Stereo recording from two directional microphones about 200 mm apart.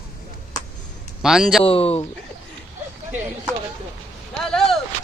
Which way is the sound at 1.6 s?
30° left (ahead or behind).